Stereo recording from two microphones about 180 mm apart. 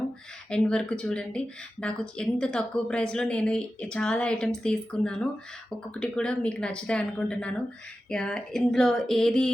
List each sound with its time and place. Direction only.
0.5 s speech: 5° left (ahead or behind)